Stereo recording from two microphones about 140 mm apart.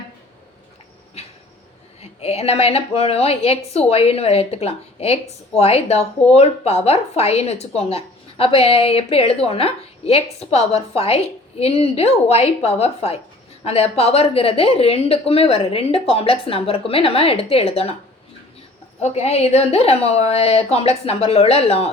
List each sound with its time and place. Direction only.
1.2 s a sound: 45° left (ahead or behind)
2.0 s a woman's voice: 50° left (ahead or behind)
19.0 s a woman's voice: 50° left (ahead or behind)